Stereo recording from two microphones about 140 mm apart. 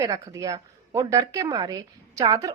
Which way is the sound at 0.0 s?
25° right (ahead or behind).